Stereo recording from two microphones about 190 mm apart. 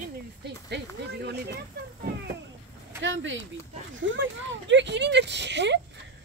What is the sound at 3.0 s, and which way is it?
Speech, 75° right (ahead or behind).